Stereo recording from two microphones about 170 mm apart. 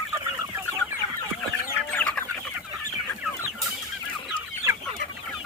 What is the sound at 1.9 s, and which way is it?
Chicken, 10° left (ahead or behind).